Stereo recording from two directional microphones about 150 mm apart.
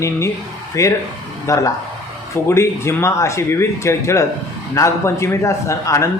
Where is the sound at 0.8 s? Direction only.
20° left (ahead or behind).